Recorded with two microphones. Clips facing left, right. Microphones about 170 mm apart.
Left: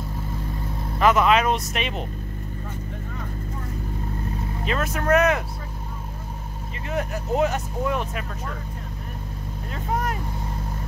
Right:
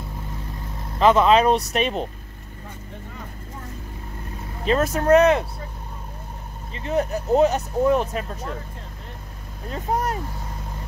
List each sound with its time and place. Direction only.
0.9 s speech: 25° right (ahead or behind)
4.6 s speech: 35° right (ahead or behind)
6.9 s speech: 35° right (ahead or behind)